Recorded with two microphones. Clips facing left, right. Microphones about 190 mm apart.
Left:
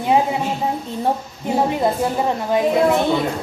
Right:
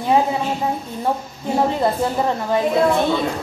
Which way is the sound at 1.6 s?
15° left (ahead or behind).